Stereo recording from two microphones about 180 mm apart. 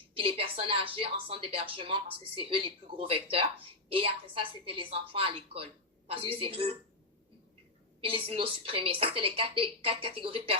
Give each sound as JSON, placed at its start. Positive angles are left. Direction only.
{"t": 0.1, "sound": "a woman's voice", "side_deg": -30}
{"t": 8.0, "sound": "a woman's voice", "side_deg": -30}